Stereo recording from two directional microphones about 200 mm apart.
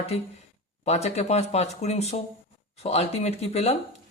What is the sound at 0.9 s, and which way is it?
A man's voice, 30° left (ahead or behind).